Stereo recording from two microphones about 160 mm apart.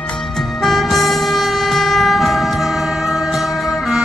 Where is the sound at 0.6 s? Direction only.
Centre (ahead or behind).